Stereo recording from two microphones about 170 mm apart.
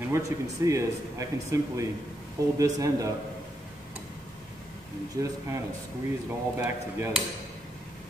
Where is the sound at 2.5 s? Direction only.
20° right (ahead or behind).